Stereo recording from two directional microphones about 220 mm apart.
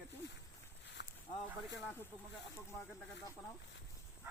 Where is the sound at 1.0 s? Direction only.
50° left (ahead or behind).